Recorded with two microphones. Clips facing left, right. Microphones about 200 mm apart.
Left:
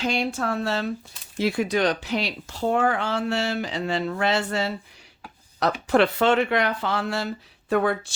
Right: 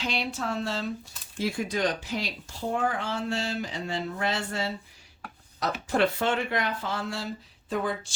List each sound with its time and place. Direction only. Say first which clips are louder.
0.0 s speech: left 6 dB; 45° left (ahead or behind); by 8.1 s 65° left (ahead or behind)